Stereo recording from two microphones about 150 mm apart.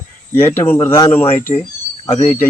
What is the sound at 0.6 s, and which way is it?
Speech, 15° left (ahead or behind).